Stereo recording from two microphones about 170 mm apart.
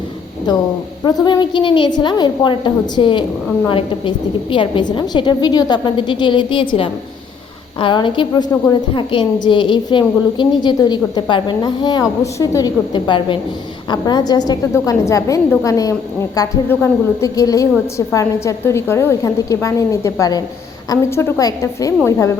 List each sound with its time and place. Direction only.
1.0 s a woman's voice: 25° left (ahead or behind)